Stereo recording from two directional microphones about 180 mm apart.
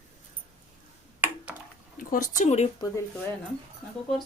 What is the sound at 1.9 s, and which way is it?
Speech, 50° left (ahead or behind).